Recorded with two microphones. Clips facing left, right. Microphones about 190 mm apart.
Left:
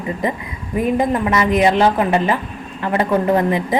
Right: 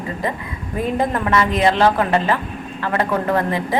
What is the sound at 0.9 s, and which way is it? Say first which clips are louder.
A woman's voice: even; 15° left (ahead or behind).